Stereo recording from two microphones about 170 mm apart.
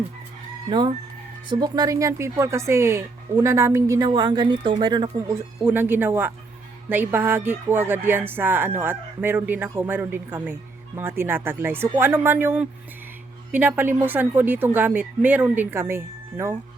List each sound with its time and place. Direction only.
0.7 s speech: 25° right (ahead or behind)
5.6 s speech: 10° right (ahead or behind)